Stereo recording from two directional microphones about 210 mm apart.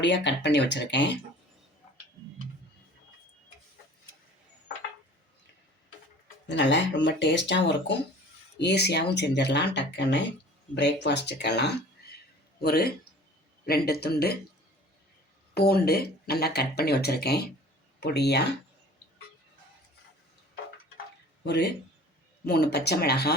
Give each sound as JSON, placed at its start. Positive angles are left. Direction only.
{"t": 0.0, "sound": "speech", "side_deg": 55}
{"t": 6.5, "sound": "a man's voice", "side_deg": 60}
{"t": 15.5, "sound": "speech", "side_deg": 50}
{"t": 21.4, "sound": "speech", "side_deg": 50}